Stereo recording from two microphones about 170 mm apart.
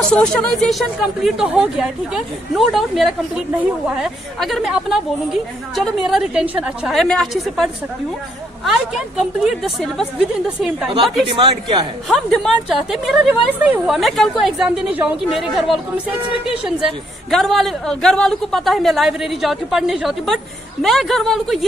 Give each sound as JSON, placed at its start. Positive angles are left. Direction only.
{"t": 0.1, "sound": "a woman's voice", "side_deg": 5}
{"t": 11.2, "sound": "a man's voice", "side_deg": -30}
{"t": 12.1, "sound": "a woman's voice", "side_deg": 0}